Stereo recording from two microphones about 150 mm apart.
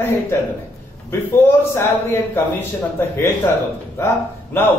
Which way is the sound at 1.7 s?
15° left (ahead or behind).